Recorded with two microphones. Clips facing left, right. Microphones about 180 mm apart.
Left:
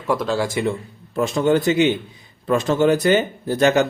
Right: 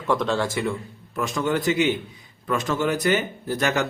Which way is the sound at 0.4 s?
20° left (ahead or behind).